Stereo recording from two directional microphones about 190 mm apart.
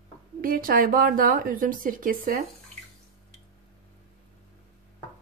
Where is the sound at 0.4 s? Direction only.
50° right (ahead or behind).